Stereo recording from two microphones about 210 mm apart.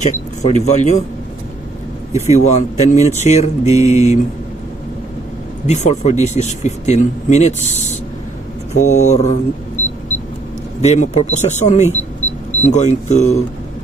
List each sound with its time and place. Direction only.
0.0 s speech: 35° left (ahead or behind)
2.1 s speech: 30° left (ahead or behind)
5.7 s speech: 30° left (ahead or behind)
8.7 s speech: 35° left (ahead or behind)
10.8 s speech: 30° left (ahead or behind)